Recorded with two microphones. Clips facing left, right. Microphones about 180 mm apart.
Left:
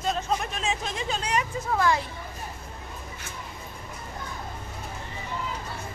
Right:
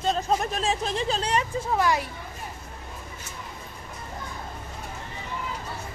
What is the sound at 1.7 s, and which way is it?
Speech, 15° right (ahead or behind).